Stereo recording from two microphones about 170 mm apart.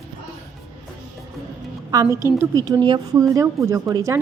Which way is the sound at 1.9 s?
20° right (ahead or behind).